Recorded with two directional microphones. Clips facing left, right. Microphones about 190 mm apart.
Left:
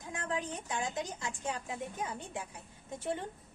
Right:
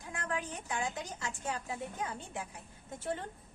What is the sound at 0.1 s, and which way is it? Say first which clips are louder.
Speech: left 1 dB; 20° left (ahead or behind).